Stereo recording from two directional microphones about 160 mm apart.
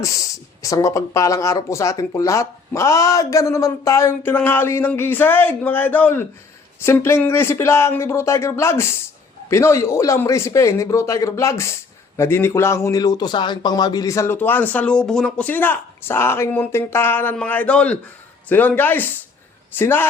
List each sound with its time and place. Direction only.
0.0 s a man's voice: 20° left (ahead or behind)